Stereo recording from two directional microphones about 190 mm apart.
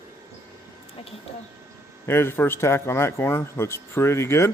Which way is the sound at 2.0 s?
10° left (ahead or behind).